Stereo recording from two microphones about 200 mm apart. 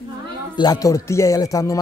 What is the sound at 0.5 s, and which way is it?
A man's voice, 20° left (ahead or behind).